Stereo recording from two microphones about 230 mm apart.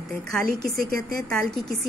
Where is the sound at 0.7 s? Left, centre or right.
Right.